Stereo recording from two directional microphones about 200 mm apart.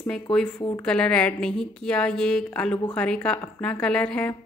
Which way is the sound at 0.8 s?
5° left (ahead or behind).